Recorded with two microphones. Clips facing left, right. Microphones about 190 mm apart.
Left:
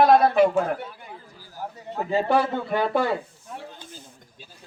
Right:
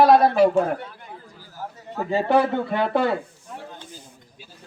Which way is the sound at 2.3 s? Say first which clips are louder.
Right 5 dB; 20° right (ahead or behind).